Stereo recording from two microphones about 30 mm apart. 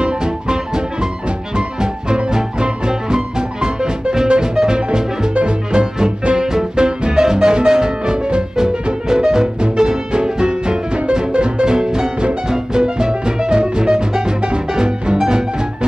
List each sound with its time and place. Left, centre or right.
0.0 s music: right